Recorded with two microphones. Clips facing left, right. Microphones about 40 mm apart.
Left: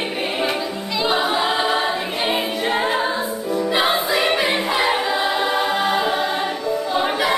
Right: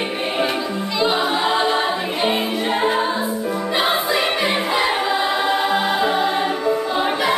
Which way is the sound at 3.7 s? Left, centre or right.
Centre.